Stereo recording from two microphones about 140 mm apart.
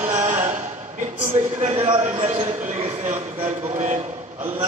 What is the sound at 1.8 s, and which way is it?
A man's voice, 55° right (ahead or behind).